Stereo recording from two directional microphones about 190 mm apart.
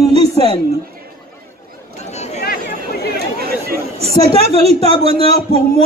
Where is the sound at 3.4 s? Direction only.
55° right (ahead or behind).